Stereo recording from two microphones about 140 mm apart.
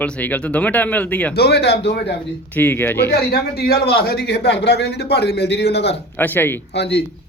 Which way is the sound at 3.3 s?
90° left.